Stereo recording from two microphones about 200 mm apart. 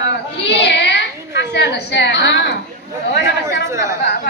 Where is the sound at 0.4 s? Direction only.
60° left (ahead or behind).